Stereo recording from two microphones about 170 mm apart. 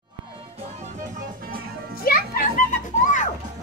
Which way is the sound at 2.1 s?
60° left (ahead or behind).